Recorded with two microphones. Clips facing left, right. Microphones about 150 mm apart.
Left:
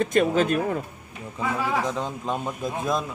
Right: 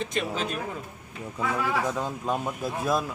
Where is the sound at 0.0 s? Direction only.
50° left (ahead or behind).